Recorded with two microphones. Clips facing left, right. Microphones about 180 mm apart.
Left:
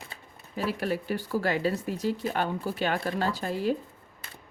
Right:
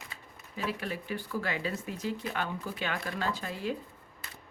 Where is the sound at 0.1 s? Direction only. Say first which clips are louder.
Left 5 dB; 35° left (ahead or behind).